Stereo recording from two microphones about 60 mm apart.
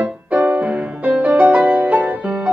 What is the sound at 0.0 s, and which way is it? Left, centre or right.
Music, centre.